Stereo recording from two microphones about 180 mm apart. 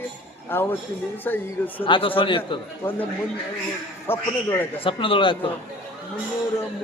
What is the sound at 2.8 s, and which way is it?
Speech, 10° left (ahead or behind).